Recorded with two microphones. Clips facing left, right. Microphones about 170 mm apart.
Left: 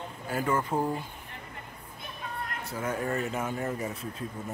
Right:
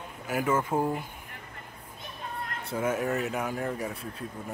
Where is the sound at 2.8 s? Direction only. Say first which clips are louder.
Right 2 dB; 5° right (ahead or behind).